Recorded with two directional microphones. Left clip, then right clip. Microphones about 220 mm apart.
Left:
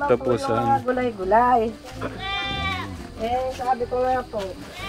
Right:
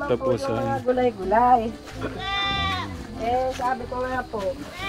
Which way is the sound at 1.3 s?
25° left (ahead or behind).